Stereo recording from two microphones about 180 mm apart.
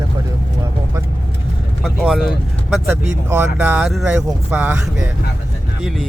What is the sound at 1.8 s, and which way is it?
Vehicle, centre (ahead or behind).